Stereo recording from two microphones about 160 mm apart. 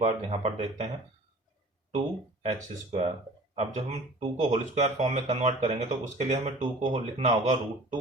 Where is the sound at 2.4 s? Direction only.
40° right (ahead or behind).